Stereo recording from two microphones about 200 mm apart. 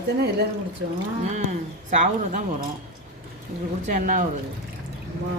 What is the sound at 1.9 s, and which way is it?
Speech, 40° right (ahead or behind).